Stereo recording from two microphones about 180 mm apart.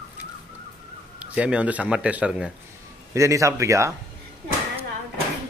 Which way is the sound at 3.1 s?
15° right (ahead or behind).